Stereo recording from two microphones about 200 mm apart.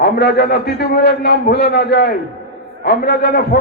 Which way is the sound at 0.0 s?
55° left (ahead or behind).